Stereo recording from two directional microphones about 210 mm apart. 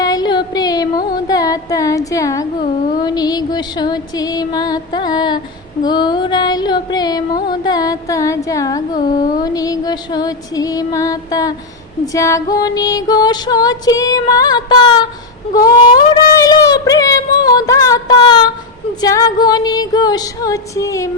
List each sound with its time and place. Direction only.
0.0 s carnatic music: 20° left (ahead or behind)
3.0 s music: 20° left (ahead or behind)
5.8 s female singing: 20° left (ahead or behind)
7.4 s music: 20° left (ahead or behind)
15.6 s a sound: 20° left (ahead or behind)
18.9 s music: 15° left (ahead or behind)